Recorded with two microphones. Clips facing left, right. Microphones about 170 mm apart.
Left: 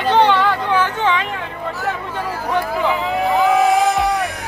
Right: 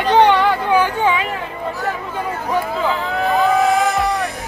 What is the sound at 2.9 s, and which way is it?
Speech, 15° left (ahead or behind).